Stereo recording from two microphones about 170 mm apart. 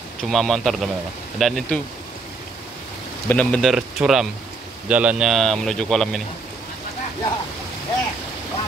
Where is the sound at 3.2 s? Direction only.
5° left (ahead or behind).